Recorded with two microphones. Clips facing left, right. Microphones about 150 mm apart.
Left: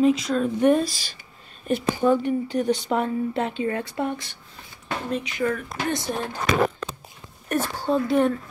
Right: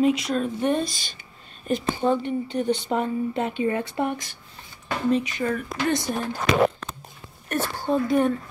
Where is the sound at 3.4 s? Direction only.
15° right (ahead or behind).